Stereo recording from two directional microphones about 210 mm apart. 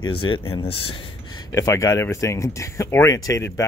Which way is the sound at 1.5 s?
15° left (ahead or behind).